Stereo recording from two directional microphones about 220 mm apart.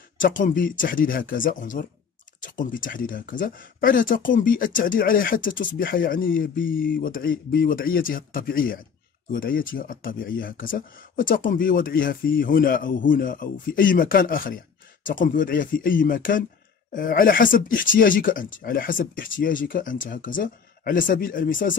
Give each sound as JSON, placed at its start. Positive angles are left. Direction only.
{"t": 0.2, "sound": "speech", "side_deg": 35}